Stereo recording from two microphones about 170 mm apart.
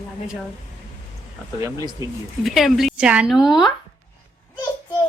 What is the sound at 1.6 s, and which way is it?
Speech, 20° right (ahead or behind).